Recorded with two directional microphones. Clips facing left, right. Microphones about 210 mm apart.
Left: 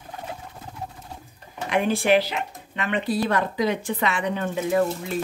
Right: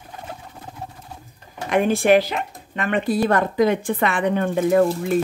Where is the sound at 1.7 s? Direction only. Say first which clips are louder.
Right 4 dB; 45° right (ahead or behind).